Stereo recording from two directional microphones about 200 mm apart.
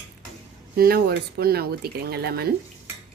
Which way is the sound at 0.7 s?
50° right (ahead or behind).